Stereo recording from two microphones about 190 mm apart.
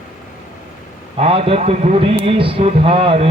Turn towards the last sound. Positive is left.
turn(degrees=-30)  # may be behind; listen again after turning